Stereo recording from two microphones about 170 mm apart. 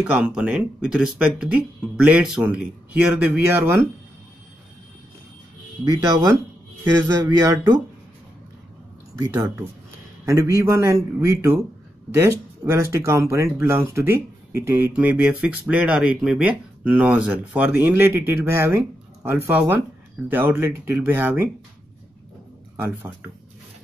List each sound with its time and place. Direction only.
0.0 s speech: 5° right (ahead or behind)
5.9 s speech: 20° right (ahead or behind)
9.2 s speech: 20° right (ahead or behind)